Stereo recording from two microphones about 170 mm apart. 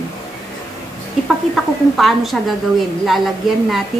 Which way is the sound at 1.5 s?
Centre (ahead or behind).